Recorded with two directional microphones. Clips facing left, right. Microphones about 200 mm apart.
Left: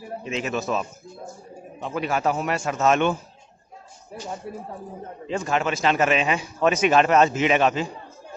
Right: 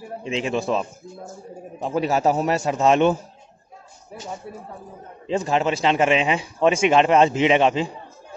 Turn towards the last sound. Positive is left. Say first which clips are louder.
# right 3 dB
turn(degrees=-25)  # may be behind; listen again after turning